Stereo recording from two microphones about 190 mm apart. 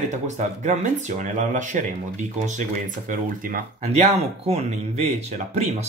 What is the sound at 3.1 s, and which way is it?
Speech, 45° right (ahead or behind).